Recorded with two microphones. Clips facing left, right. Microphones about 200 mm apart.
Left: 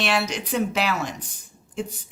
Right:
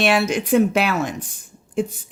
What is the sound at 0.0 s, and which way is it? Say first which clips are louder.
A woman's voice: right 6 dB; 50° right (ahead or behind).